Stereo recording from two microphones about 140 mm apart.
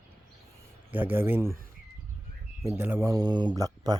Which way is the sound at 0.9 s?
15° right (ahead or behind).